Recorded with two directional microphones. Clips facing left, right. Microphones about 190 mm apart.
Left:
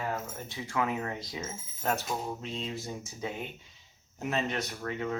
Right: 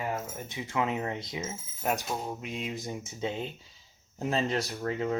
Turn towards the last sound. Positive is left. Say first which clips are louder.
# right 3 dB
turn(degrees=-30)  # may be behind; listen again after turning